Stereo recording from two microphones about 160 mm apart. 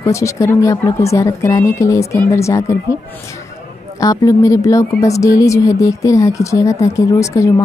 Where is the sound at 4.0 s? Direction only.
20° left (ahead or behind).